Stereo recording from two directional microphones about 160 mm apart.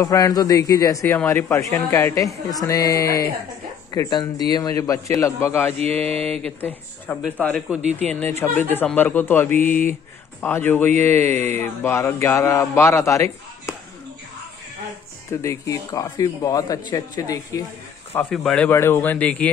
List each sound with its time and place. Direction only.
0.0 s a man's voice: 20° left (ahead or behind)
5.8 s mantra: 40° right (ahead or behind)
6.2 s a man's voice: 5° left (ahead or behind)
15.4 s a man's voice: 20° left (ahead or behind)
18.3 s a man's voice: 5° left (ahead or behind)